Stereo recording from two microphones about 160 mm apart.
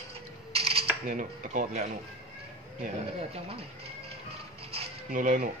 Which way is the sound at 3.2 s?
40° right (ahead or behind).